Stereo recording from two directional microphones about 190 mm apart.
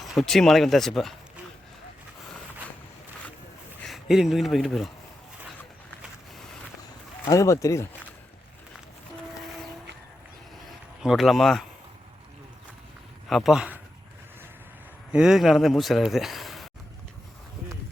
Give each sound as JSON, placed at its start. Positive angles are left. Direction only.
{"t": 0.1, "sound": "speech", "side_deg": 0}
{"t": 3.8, "sound": "speech", "side_deg": 0}
{"t": 7.3, "sound": "speech", "side_deg": 15}
{"t": 11.0, "sound": "speech", "side_deg": 0}
{"t": 13.2, "sound": "speech", "side_deg": 0}
{"t": 15.1, "sound": "speech", "side_deg": -5}